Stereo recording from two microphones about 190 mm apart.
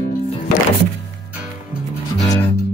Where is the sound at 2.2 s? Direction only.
20° left (ahead or behind).